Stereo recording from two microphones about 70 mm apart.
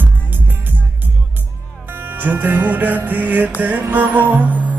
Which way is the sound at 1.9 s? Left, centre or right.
Right.